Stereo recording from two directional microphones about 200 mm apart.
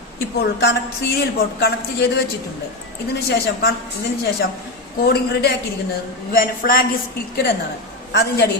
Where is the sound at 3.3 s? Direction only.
50° left (ahead or behind).